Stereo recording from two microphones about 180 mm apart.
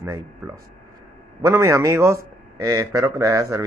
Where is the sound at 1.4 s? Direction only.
15° right (ahead or behind).